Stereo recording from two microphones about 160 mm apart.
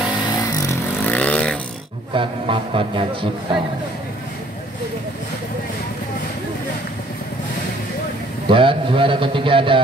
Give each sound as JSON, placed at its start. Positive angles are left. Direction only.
{"t": 0.7, "sound": "vehicle", "side_deg": 10}
{"t": 2.1, "sound": "a man's voice", "side_deg": -35}
{"t": 8.5, "sound": "a man's voice", "side_deg": -35}